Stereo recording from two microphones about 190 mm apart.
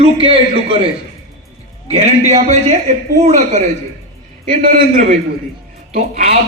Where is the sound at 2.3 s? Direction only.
35° right (ahead or behind).